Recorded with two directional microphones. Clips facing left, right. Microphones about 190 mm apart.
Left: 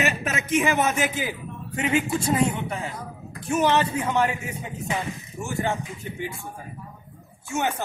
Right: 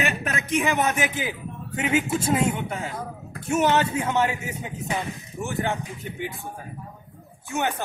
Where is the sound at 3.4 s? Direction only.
25° right (ahead or behind).